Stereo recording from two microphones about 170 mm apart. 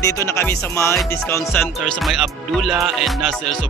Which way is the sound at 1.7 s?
Centre (ahead or behind).